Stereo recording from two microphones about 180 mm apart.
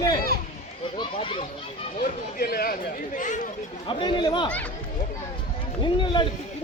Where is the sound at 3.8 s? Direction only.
25° left (ahead or behind).